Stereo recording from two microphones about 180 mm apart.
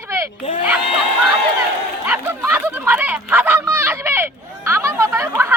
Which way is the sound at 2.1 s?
10° right (ahead or behind).